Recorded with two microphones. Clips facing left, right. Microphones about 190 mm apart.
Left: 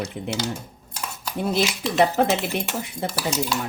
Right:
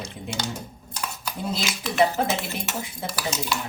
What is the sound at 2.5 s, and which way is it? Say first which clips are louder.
Cutlery: left 4 dB; 60° left (ahead or behind).